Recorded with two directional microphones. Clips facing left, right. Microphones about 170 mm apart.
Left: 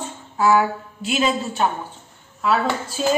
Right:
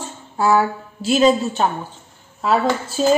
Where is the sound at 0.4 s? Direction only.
35° right (ahead or behind).